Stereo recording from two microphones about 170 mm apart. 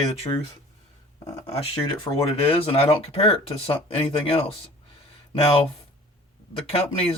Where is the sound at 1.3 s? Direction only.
35° left (ahead or behind).